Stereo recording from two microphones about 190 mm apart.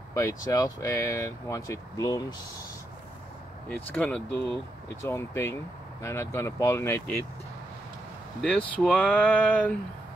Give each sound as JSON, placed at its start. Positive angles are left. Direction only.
{"t": 0.1, "sound": "speech", "side_deg": 15}
{"t": 3.6, "sound": "speech", "side_deg": 5}
{"t": 8.4, "sound": "speech", "side_deg": 5}